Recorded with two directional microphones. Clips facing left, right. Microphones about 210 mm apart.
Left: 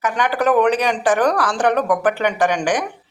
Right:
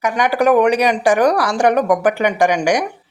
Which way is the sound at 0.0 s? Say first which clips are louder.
Right 3 dB; 10° right (ahead or behind).